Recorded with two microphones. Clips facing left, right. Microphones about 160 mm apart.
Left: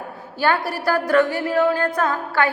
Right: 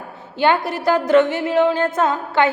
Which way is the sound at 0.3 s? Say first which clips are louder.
Right 3 dB; 20° right (ahead or behind).